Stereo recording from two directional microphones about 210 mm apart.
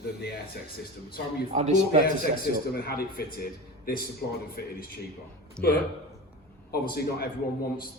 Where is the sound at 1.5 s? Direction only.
35° right (ahead or behind).